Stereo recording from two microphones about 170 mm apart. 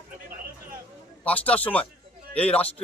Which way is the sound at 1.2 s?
10° left (ahead or behind).